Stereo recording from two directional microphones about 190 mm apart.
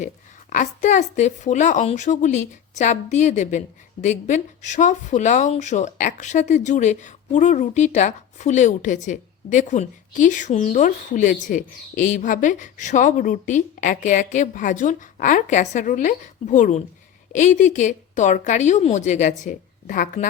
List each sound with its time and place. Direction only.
0.5 s speech: 40° left (ahead or behind)